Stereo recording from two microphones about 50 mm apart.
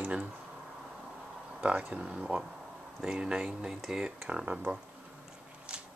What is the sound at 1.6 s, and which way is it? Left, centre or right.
Speech, right.